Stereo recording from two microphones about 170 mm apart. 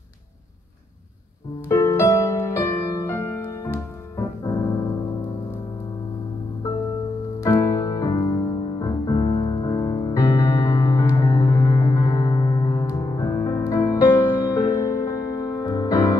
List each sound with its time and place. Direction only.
1.7 s music: 15° left (ahead or behind)
7.3 s music: 20° left (ahead or behind)